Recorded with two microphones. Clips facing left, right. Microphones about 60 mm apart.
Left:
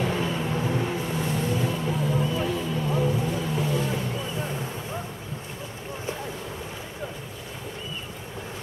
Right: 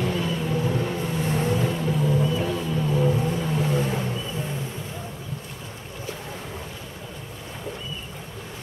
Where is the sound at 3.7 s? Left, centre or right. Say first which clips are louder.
Right 2 dB; right.